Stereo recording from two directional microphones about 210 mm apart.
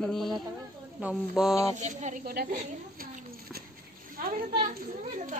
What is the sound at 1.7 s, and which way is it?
Speech, 35° right (ahead or behind).